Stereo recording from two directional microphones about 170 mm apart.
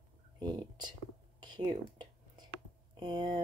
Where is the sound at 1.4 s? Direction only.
25° right (ahead or behind).